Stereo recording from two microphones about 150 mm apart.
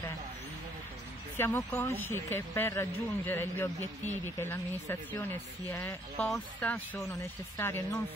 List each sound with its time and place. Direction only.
1.3 s speech: 15° left (ahead or behind)